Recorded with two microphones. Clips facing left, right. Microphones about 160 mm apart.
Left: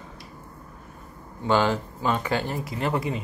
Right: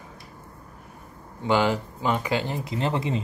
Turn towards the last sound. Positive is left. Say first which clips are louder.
# right 1 dB
turn(degrees=-25)  # may be behind; listen again after turning